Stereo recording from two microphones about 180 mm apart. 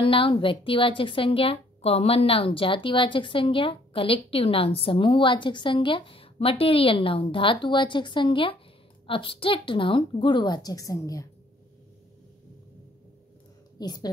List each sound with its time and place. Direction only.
0.0 s a woman's voice: 30° left (ahead or behind)
13.7 s a woman's voice: 20° left (ahead or behind)